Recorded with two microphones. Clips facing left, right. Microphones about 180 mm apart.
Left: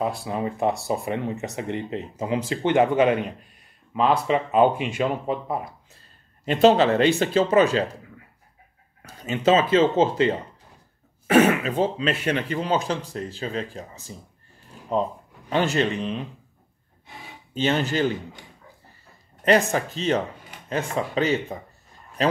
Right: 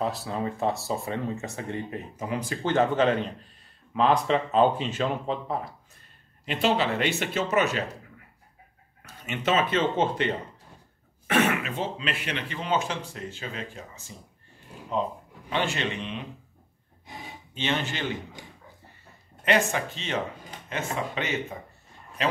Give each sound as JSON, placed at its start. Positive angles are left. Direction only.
{"t": 0.0, "sound": "speech", "side_deg": 10}
{"t": 6.4, "sound": "speech", "side_deg": 40}
{"t": 9.2, "sound": "speech", "side_deg": 30}
{"t": 11.2, "sound": "speech", "side_deg": 35}
{"t": 15.5, "sound": "speech", "side_deg": 40}
{"t": 17.6, "sound": "speech", "side_deg": 40}
{"t": 19.4, "sound": "speech", "side_deg": 40}